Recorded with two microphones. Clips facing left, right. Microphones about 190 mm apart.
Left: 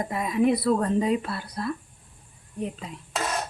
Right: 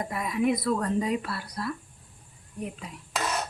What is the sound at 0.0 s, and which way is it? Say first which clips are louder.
Speech: left 4 dB; 25° left (ahead or behind).